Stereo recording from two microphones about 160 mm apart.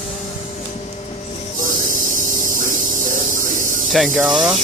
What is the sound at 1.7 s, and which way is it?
Hum, 55° right (ahead or behind).